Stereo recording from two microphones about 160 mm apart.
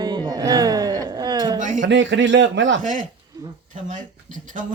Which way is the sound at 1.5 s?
50° right (ahead or behind).